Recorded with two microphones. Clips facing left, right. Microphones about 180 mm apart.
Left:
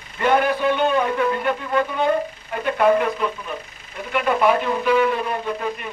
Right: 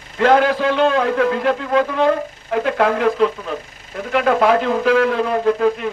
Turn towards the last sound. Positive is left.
turn(degrees=-90)